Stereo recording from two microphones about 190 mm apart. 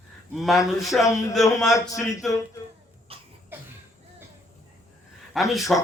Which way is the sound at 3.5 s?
10° right (ahead or behind).